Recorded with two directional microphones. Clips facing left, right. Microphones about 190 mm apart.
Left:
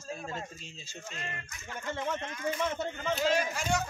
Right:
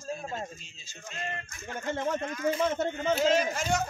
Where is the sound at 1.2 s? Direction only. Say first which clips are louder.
Right 5 dB; 45° right (ahead or behind); by 2.8 s 30° right (ahead or behind).